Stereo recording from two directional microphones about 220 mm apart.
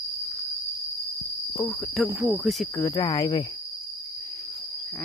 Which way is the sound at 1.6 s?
Centre (ahead or behind).